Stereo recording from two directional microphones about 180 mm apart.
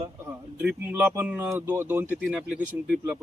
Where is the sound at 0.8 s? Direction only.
10° right (ahead or behind).